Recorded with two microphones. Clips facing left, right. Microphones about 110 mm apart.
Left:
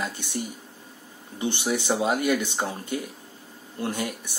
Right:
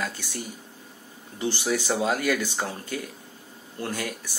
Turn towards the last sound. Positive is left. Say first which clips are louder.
# left 2 dB
turn(degrees=20)  # may be behind; listen again after turning